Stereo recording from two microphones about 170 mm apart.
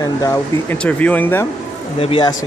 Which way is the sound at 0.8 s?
10° left (ahead or behind).